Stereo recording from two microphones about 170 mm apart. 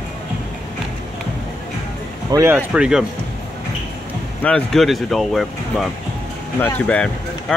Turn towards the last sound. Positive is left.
turn(degrees=5)  # may be behind; listen again after turning